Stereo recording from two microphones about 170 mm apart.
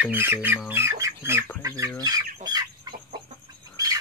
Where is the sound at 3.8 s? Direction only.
20° right (ahead or behind).